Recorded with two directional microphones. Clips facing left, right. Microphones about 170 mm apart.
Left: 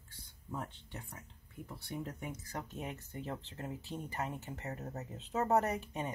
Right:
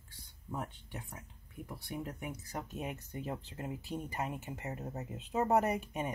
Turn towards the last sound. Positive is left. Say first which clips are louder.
# right 2 dB
turn(degrees=-15)  # may be behind; listen again after turning